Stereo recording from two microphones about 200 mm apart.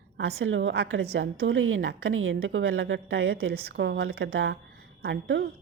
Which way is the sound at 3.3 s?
50° right (ahead or behind).